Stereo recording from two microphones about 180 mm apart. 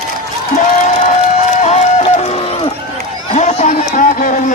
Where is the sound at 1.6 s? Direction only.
40° left (ahead or behind).